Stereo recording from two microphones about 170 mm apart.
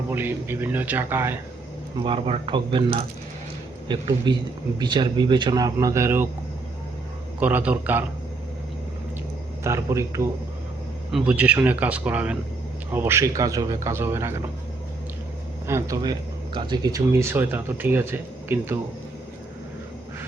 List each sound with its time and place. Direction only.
0.1 s speech: 10° right (ahead or behind)
2.0 s speech: 35° right (ahead or behind); by 6.2 s 15° right (ahead or behind)
7.3 s speech: 10° right (ahead or behind)
9.6 s speech: 20° right (ahead or behind)
15.6 s speech: 15° right (ahead or behind)